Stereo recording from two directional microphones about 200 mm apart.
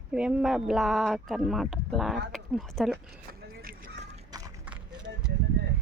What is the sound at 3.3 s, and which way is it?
Clip-clop, 45° right (ahead or behind).